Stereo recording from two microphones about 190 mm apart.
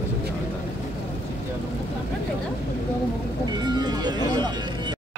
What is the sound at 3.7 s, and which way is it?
Music, 20° right (ahead or behind).